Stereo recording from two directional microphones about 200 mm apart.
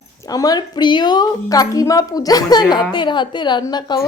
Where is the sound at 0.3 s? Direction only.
20° left (ahead or behind).